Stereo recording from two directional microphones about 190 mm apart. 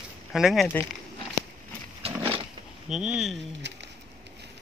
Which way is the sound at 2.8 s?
5° right (ahead or behind).